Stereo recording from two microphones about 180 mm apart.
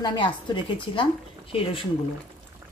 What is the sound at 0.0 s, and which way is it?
Speech, 25° left (ahead or behind).